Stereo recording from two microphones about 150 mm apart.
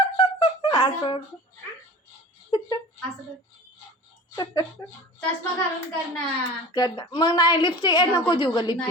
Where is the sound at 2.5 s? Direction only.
30° left (ahead or behind).